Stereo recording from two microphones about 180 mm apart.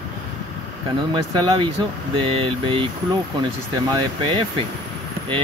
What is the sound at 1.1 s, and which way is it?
Speech, 25° right (ahead or behind).